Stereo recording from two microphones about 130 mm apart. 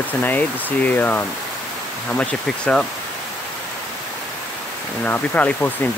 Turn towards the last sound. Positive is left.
turn(degrees=10)  # may be behind; listen again after turning